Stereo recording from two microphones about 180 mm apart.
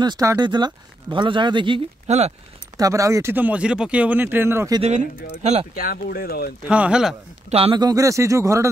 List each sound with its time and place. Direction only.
0.0 s speech: 20° right (ahead or behind)
2.0 s speech: 40° right (ahead or behind)
2.8 s speech: 15° right (ahead or behind)
5.4 s speech: 40° right (ahead or behind)
5.8 s speech: 55° left (ahead or behind)
6.7 s speech: 5° right (ahead or behind)
7.4 s speech: 30° right (ahead or behind); by 8.6 s 15° right (ahead or behind)